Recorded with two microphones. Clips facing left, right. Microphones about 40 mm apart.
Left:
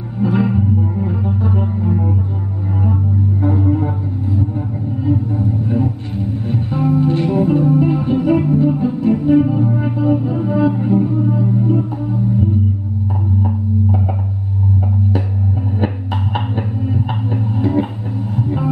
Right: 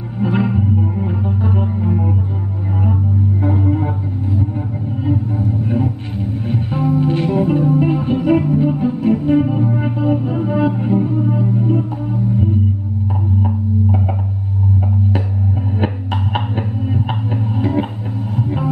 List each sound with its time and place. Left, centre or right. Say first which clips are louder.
0.4 s music: left 1 dB; centre
3.4 s music: left 2 dB; centre
16.3 s a sound: even; centre
18.3 s music: left 1 dB; centre